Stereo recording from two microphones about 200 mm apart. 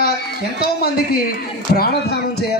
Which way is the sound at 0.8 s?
50° left (ahead or behind).